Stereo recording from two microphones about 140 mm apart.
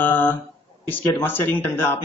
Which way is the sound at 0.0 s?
15° left (ahead or behind).